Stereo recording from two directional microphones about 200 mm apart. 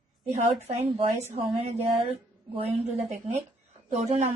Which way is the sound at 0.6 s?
30° right (ahead or behind).